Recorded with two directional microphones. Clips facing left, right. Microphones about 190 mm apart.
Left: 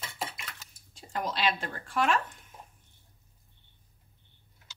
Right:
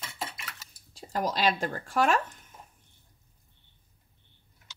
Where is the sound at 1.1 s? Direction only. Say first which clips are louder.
Right 3 dB; 40° right (ahead or behind).